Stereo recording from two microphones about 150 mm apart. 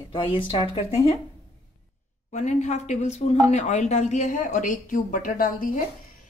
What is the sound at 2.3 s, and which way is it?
A woman's voice, 50° left (ahead or behind).